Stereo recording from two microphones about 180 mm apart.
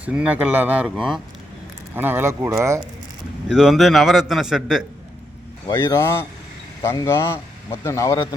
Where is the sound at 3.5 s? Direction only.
Centre (ahead or behind).